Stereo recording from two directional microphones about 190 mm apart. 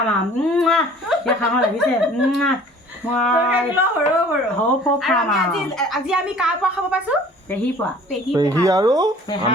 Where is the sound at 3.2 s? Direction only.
5° left (ahead or behind).